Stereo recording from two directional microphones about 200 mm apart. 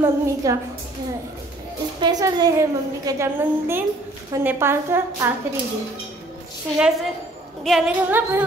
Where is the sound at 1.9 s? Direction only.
20° right (ahead or behind).